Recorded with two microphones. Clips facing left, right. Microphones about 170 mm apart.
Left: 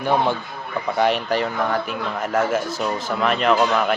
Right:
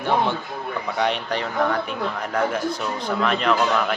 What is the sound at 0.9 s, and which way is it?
Speech, 5° left (ahead or behind).